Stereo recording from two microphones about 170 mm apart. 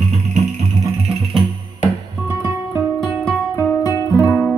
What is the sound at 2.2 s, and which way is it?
Music, 10° right (ahead or behind).